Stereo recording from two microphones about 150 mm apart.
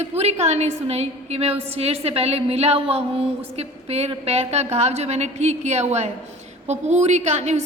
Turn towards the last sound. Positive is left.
turn(degrees=-50)  # may be behind; listen again after turning